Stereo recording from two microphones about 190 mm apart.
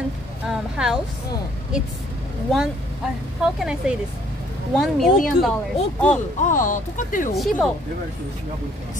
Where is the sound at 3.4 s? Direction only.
5° right (ahead or behind).